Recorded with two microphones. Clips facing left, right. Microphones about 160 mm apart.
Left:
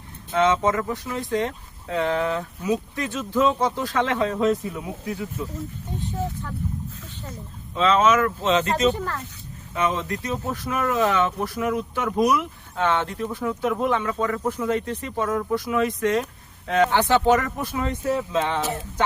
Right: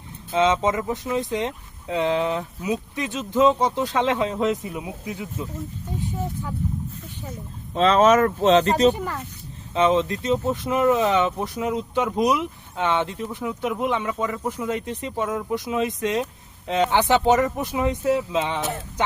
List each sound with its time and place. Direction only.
0.3 s speech: 20° right (ahead or behind)
7.8 s speech: 40° right (ahead or behind)
8.9 s speech: 15° right (ahead or behind)
9.7 s speech: 25° right (ahead or behind)